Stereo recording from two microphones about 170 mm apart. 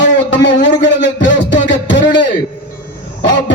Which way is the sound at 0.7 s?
90° left.